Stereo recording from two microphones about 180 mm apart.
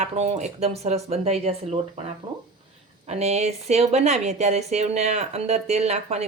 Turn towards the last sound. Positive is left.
turn(degrees=-35)  # may be behind; listen again after turning